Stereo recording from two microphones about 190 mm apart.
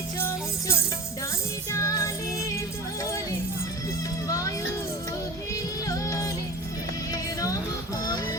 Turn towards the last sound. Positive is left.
turn(degrees=15)  # may be behind; listen again after turning